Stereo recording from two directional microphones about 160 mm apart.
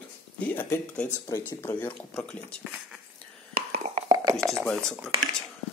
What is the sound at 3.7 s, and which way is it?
Beatboxing, 40° right (ahead or behind).